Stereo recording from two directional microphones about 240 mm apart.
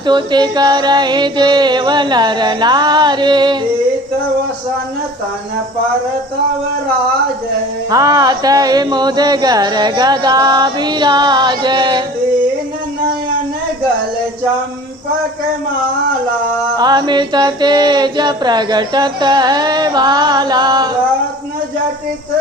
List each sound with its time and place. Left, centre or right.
0.0 s mantra: centre
7.9 s mantra: centre
16.7 s mantra: centre